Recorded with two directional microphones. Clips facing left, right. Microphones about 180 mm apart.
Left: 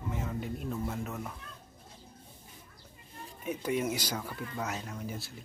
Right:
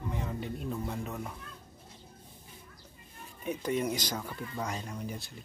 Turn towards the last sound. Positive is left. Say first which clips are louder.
# even
turn(degrees=5)  # may be behind; listen again after turning